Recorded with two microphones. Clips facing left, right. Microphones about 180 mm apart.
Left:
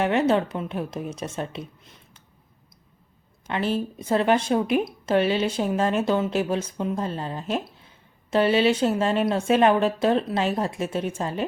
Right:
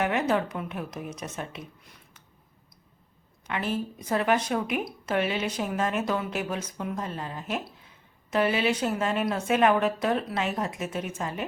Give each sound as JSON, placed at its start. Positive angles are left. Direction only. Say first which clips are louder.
{"t": 0.0, "sound": "speech", "louder": "left 5 dB", "side_deg": 30}
{"t": 3.4, "sound": "speech", "louder": "left 4 dB", "side_deg": 30}